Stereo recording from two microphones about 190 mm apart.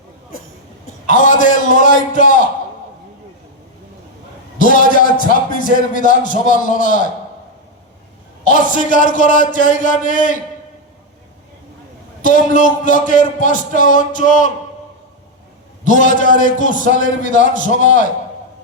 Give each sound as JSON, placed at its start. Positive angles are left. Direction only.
{"t": 1.0, "sound": "a man's voice", "side_deg": 45}
{"t": 4.5, "sound": "a man's voice", "side_deg": 45}
{"t": 8.4, "sound": "a man's voice", "side_deg": 45}
{"t": 12.2, "sound": "a man's voice", "side_deg": 45}
{"t": 15.8, "sound": "a man's voice", "side_deg": 40}